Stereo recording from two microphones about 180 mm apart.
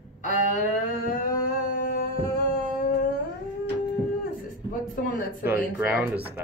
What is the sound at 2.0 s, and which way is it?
Music, 55° left (ahead or behind).